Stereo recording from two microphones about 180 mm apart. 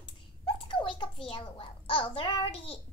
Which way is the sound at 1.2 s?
30° left (ahead or behind).